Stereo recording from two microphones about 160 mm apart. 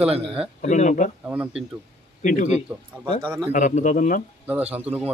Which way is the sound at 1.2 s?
10° right (ahead or behind).